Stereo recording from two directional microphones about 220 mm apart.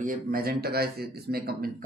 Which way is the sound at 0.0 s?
40° right (ahead or behind).